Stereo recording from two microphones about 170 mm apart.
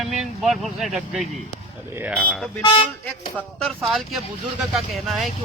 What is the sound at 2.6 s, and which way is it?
Speech, 25° left (ahead or behind).